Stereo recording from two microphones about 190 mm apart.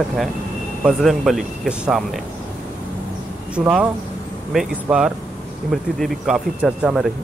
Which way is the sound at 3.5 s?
5° right (ahead or behind).